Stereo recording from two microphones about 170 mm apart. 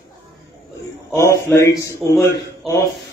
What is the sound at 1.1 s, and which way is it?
Mantra, 15° left (ahead or behind).